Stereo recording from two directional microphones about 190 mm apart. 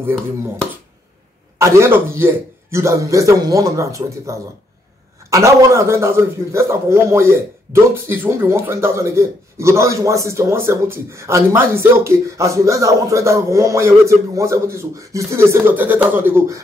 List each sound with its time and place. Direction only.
1.6 s a man's voice: 15° right (ahead or behind)